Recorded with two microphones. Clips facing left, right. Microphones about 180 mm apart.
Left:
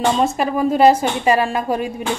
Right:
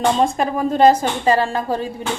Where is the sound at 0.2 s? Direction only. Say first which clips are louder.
Left 1 dB; 5° left (ahead or behind).